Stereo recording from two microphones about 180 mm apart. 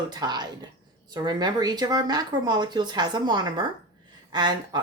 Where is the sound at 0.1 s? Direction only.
25° right (ahead or behind).